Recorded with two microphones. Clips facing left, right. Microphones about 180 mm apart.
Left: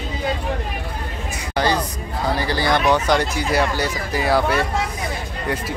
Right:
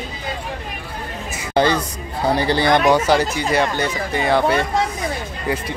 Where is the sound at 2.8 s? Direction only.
10° right (ahead or behind).